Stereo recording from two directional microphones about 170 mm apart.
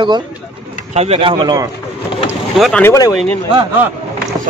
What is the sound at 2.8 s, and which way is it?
Speech, 20° left (ahead or behind).